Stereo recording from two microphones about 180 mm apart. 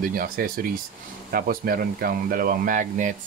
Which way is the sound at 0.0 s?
50° right (ahead or behind).